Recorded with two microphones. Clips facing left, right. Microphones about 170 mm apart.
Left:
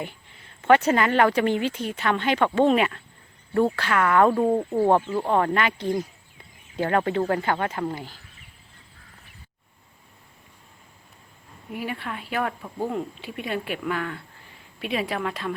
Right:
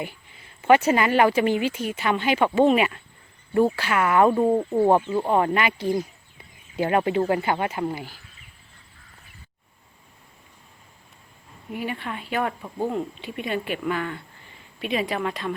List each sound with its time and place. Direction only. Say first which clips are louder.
0.6 s speech: right 1 dB; 5° right (ahead or behind)
11.7 s speech: right 1 dB; centre (ahead or behind)